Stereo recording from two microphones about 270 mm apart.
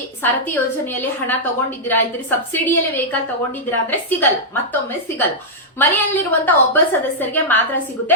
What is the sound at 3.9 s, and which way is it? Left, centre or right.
A woman's voice, centre.